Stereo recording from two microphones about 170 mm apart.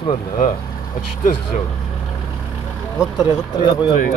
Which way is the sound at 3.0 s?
25° left (ahead or behind).